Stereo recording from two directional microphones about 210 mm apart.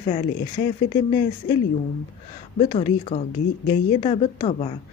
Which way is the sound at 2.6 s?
30° left (ahead or behind).